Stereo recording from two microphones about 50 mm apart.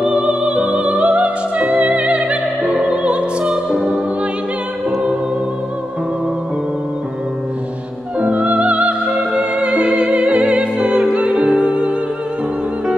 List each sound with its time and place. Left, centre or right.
0.0 s music: right
8.2 s music: right